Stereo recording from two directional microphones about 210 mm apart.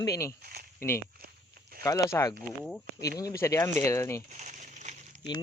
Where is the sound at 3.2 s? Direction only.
15° left (ahead or behind).